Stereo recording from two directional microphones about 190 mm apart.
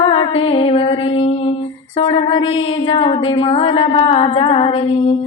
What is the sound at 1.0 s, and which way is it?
Female singing, 35° left (ahead or behind).